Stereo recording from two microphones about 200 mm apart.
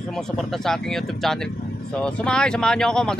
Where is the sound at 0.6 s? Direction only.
Centre (ahead or behind).